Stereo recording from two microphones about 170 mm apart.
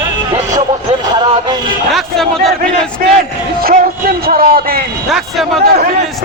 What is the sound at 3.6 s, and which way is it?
Speech, 60° right (ahead or behind).